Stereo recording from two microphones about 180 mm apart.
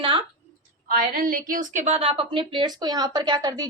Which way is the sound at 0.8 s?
50° right (ahead or behind).